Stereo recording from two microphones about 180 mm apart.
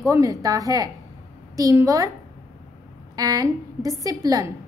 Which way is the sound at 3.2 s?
20° right (ahead or behind).